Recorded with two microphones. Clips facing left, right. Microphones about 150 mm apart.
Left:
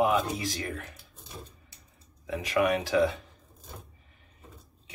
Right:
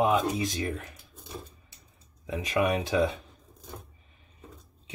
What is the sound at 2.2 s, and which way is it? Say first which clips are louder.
Speech: left 1 dB; 20° right (ahead or behind).